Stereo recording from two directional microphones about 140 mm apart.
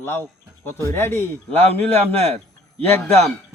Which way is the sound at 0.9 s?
15° left (ahead or behind).